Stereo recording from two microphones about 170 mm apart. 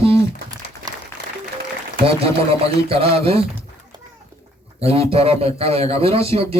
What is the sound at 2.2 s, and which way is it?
Speech, 35° right (ahead or behind).